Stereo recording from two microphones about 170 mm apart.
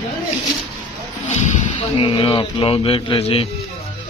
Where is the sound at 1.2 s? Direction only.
45° left (ahead or behind).